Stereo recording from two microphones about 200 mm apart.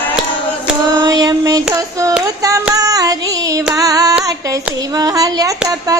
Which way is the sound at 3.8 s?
15° right (ahead or behind).